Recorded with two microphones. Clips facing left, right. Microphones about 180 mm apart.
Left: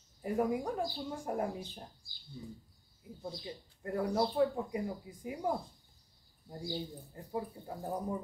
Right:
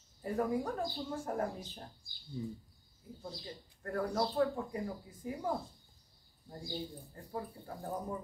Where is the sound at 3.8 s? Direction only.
15° left (ahead or behind).